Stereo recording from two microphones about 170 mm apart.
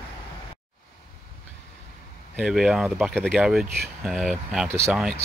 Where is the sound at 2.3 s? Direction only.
5° right (ahead or behind).